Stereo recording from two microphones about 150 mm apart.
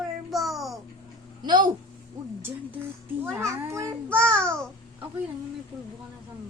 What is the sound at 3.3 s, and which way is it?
Speech, 20° right (ahead or behind).